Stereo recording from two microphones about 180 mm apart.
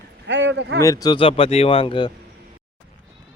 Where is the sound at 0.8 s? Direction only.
20° left (ahead or behind).